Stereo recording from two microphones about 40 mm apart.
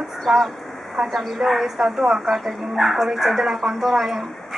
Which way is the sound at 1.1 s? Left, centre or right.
Centre.